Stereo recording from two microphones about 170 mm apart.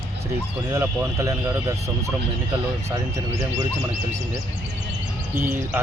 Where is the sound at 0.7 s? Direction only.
20° right (ahead or behind).